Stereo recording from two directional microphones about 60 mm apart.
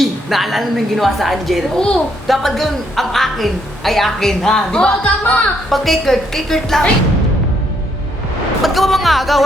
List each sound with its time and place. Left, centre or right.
0.0 s a woman's voice: centre
5.2 s a woman's voice: left
5.6 s a woman's voice: centre
8.6 s a woman's voice: centre